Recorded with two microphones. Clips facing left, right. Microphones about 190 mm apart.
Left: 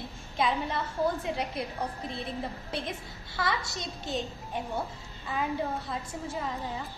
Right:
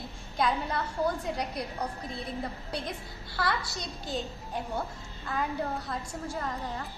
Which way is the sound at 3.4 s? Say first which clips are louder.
Even; centre (ahead or behind).